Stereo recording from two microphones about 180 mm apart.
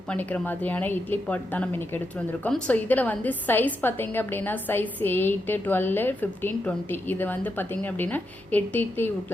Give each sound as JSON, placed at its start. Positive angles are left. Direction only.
{"t": 0.1, "sound": "a woman's voice", "side_deg": 10}